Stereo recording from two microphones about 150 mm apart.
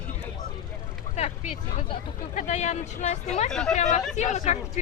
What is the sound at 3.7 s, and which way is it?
Speech, 55° left (ahead or behind).